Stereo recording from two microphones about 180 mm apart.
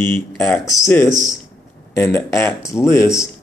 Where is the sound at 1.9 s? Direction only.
10° left (ahead or behind).